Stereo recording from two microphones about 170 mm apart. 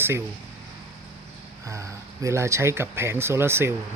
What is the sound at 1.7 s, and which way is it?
Speech, 20° right (ahead or behind).